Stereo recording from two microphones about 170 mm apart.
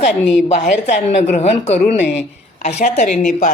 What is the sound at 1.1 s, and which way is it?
A woman's voice, 40° left (ahead or behind).